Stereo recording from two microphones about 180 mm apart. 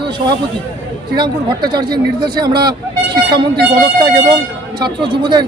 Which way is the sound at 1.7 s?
25° right (ahead or behind).